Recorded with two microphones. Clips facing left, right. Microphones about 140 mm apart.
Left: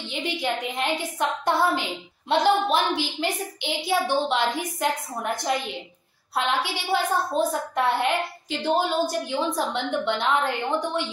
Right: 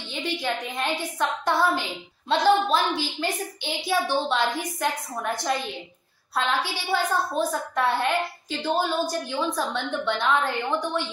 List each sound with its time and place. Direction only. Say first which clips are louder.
0.1 s a woman's voice: left 1 dB; 20° left (ahead or behind)